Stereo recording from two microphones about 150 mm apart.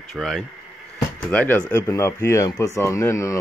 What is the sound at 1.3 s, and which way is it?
Speech, 10° left (ahead or behind).